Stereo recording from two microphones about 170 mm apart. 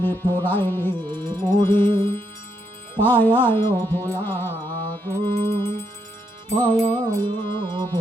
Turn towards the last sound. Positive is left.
turn(degrees=-25)  # may be behind; listen again after turning